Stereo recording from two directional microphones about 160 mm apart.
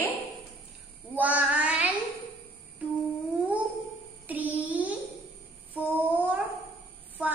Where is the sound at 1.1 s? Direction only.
10° right (ahead or behind).